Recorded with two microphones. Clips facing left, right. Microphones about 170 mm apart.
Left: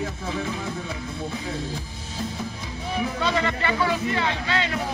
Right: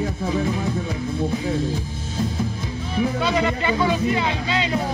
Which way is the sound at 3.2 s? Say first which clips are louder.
Right 3 dB; 15° right (ahead or behind).